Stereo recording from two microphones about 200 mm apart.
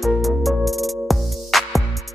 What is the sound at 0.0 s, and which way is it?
Music, centre (ahead or behind).